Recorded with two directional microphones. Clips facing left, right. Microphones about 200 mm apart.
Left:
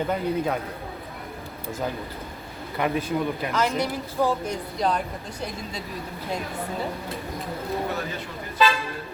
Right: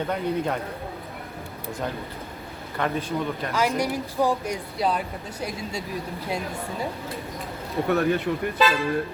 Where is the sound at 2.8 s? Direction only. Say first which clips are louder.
Left 1 dB; 10° left (ahead or behind).